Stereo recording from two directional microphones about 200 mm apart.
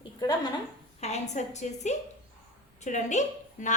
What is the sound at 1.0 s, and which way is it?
A woman's voice, 35° left (ahead or behind).